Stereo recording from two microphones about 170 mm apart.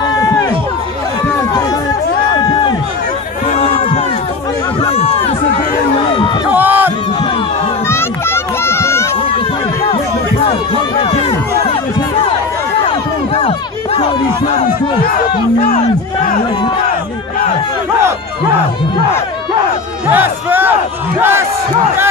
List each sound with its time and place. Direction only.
3.5 s run: 40° left (ahead or behind)
4.8 s chatter: 35° left (ahead or behind)
6.5 s crowd: 10° right (ahead or behind)
7.9 s children playing: 15° left (ahead or behind)
11.0 s a sound: 30° left (ahead or behind)
12.8 s a sound: 35° left (ahead or behind)
20.1 s crowd: 10° right (ahead or behind)